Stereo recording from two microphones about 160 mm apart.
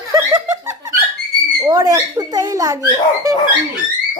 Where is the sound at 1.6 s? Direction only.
20° right (ahead or behind).